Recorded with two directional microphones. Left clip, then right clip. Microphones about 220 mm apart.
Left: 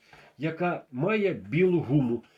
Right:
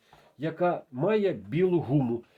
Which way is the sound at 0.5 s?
30° right (ahead or behind).